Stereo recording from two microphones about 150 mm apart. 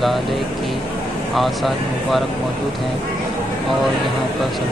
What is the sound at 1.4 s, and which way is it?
Speech, centre (ahead or behind).